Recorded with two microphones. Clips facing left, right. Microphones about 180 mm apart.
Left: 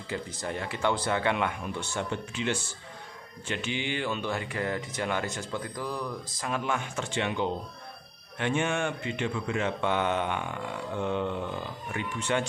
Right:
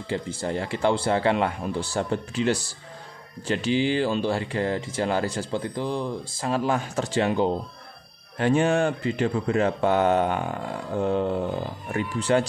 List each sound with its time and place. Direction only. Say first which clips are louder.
0.1 s speech: right 6 dB; 30° right (ahead or behind)